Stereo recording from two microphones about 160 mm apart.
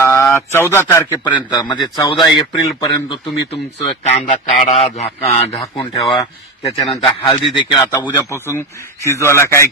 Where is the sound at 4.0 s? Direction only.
55° left (ahead or behind).